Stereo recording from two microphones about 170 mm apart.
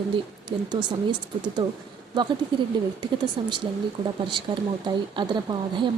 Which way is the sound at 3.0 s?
25° right (ahead or behind).